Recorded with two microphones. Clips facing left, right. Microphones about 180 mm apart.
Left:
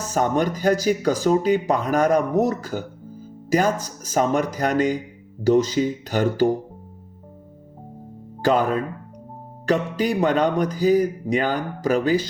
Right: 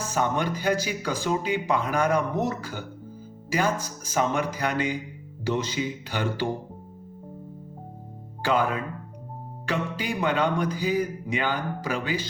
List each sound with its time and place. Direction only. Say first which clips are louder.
0.0 s speech: left 5 dB; 40° left (ahead or behind)
8.4 s speech: left 5 dB; 40° left (ahead or behind)